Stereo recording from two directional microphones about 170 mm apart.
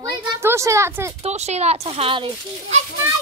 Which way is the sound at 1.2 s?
40° right (ahead or behind).